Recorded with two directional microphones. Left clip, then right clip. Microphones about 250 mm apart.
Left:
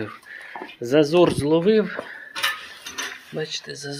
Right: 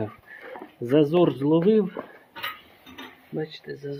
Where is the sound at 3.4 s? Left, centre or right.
Centre.